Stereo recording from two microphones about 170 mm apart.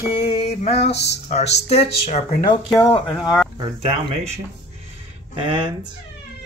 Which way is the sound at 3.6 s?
30° right (ahead or behind).